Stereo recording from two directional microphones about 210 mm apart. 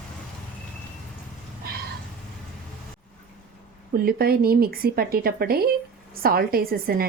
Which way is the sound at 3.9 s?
45° right (ahead or behind).